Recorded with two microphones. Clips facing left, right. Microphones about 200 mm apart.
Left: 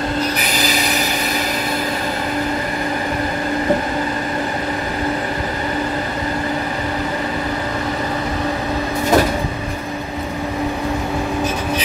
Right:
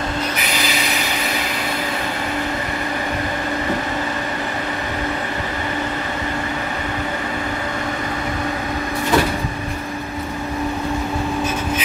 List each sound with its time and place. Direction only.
9.1 s vehicle: 40° left (ahead or behind)